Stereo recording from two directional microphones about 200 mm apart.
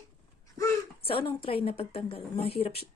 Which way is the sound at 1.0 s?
25° left (ahead or behind).